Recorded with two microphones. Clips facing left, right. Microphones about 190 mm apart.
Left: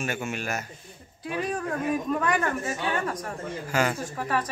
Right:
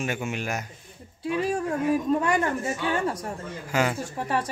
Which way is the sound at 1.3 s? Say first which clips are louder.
Right 3 dB; 25° right (ahead or behind).